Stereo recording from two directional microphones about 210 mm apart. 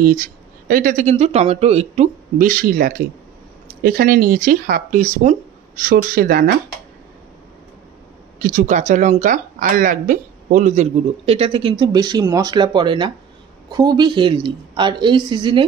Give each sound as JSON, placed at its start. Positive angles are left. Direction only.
{"t": 0.7, "sound": "speech", "side_deg": -40}
{"t": 8.4, "sound": "a woman's voice", "side_deg": -40}